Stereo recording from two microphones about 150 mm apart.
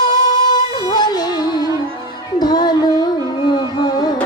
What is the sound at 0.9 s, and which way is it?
Music, 25° left (ahead or behind).